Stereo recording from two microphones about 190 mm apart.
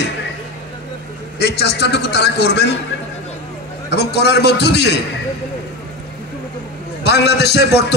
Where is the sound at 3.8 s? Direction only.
60° left (ahead or behind).